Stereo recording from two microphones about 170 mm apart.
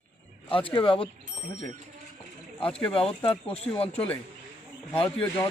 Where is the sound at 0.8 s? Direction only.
30° left (ahead or behind).